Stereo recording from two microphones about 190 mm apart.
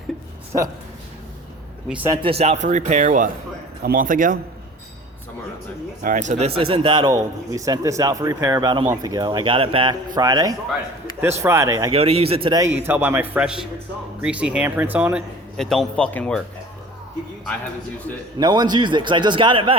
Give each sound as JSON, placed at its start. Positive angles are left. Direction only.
{"t": 2.4, "sound": "a man's voice", "side_deg": -35}
{"t": 6.0, "sound": "a man's voice", "side_deg": -45}
{"t": 11.9, "sound": "a man's voice", "side_deg": -30}
{"t": 18.3, "sound": "speech", "side_deg": -20}